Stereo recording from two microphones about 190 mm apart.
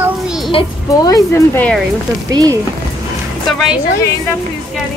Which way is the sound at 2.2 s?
20° right (ahead or behind).